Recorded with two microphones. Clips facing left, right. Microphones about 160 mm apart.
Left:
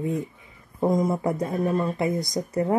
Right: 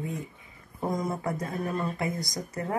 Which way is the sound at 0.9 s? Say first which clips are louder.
Left 7 dB; 20° left (ahead or behind).